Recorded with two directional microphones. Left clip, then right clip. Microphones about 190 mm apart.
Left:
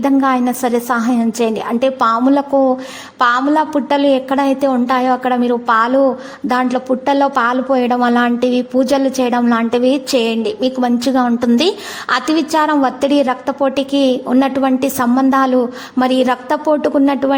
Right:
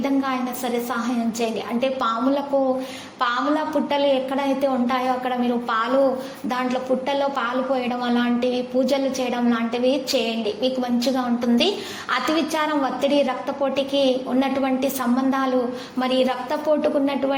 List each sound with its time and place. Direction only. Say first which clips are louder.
0.0 s a woman's voice: left 10 dB; 45° left (ahead or behind)
3.8 s a woman's voice: left 7 dB; 45° left (ahead or behind)